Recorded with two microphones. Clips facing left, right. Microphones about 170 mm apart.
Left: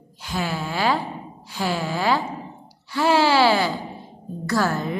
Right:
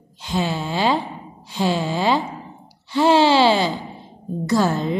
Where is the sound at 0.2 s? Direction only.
20° right (ahead or behind).